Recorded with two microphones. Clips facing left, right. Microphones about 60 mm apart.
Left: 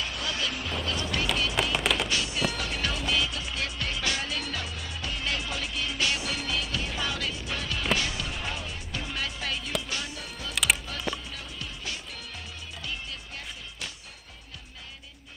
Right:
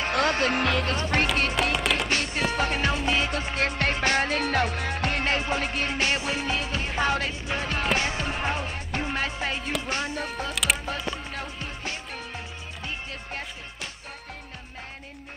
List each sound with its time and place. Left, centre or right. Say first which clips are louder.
0.1 s music: right 9 dB; right
0.8 s speech: right 5 dB; right
1.2 s music: right 3 dB; right
1.8 s music: right 2 dB; centre
2.0 s music: right 3 dB; right
3.3 s music: right 7 dB; right
5.3 s music: right 6 dB; right
10.5 s music: left 1 dB; centre
11.3 s music: right 5 dB; right